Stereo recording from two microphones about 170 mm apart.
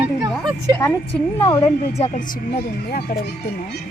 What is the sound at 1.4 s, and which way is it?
Speech, 20° left (ahead or behind).